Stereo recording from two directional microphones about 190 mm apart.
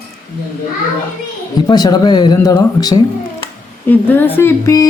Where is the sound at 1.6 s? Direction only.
20° left (ahead or behind).